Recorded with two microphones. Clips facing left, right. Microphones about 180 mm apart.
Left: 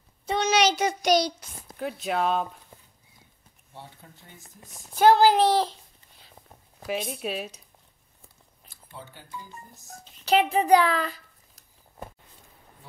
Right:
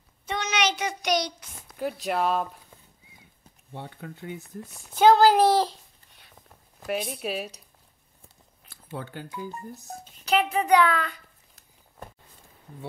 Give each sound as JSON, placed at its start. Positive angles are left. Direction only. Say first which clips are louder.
{"t": 0.3, "sound": "a child's voice", "louder": "left 5 dB", "side_deg": 30}
{"t": 1.8, "sound": "speech", "louder": "right 1 dB", "side_deg": 0}
{"t": 3.7, "sound": "speech", "louder": "right 7 dB", "side_deg": -60}
{"t": 4.9, "sound": "speech", "louder": "right 1 dB", "side_deg": 0}
{"t": 6.9, "sound": "speech", "louder": "right 1 dB", "side_deg": 0}
{"t": 8.6, "sound": "speech", "louder": "right 8 dB", "side_deg": -60}
{"t": 10.2, "sound": "a child's voice", "louder": "left 2 dB", "side_deg": 35}